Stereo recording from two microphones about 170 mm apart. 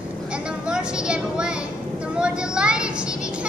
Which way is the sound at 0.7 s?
5° right (ahead or behind).